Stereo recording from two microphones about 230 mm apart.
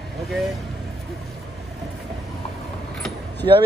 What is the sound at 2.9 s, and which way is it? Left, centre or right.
Keys jangling, centre.